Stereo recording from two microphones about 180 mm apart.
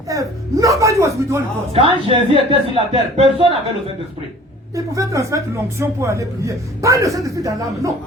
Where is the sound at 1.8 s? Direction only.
30° right (ahead or behind).